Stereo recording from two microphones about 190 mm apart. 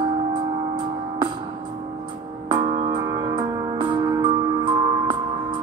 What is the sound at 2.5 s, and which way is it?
Music, 25° right (ahead or behind).